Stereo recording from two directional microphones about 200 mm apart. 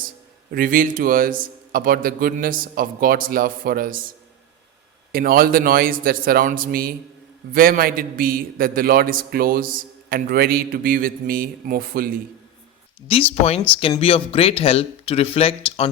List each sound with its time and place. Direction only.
0.5 s a man's voice: 45° right (ahead or behind)
5.1 s a man's voice: 45° right (ahead or behind)
13.1 s speech: 30° left (ahead or behind)